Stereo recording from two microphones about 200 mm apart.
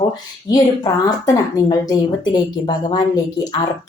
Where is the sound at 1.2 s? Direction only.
15° left (ahead or behind).